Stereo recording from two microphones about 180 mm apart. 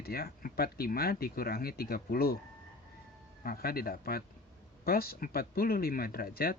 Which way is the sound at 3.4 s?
55° left (ahead or behind).